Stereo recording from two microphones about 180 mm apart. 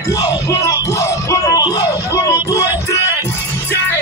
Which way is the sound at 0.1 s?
15° left (ahead or behind).